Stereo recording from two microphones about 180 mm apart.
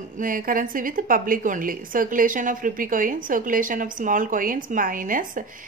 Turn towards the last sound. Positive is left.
turn(degrees=-50)  # may be behind; listen again after turning